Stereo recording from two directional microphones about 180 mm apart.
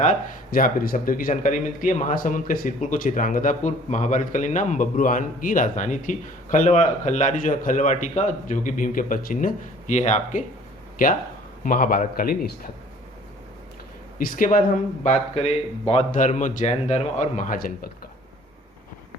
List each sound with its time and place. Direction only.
0.0 s speech: 45° left (ahead or behind)
14.2 s speech: 50° left (ahead or behind)